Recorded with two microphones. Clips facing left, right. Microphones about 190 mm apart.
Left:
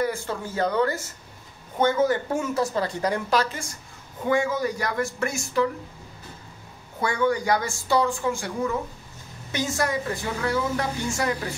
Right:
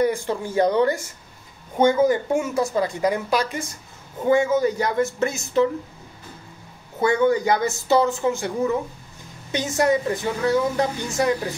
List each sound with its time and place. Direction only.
0.0 s a woman's voice: 15° right (ahead or behind)
4.3 s a woman's voice: 25° right (ahead or behind)
7.0 s a woman's voice: 25° right (ahead or behind)